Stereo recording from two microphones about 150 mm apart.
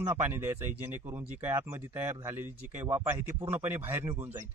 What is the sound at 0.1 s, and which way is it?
Speech, 15° right (ahead or behind).